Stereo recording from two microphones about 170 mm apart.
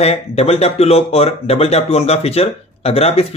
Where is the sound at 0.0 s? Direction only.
35° left (ahead or behind).